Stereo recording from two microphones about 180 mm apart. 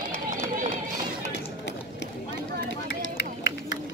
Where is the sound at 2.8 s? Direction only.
90° left.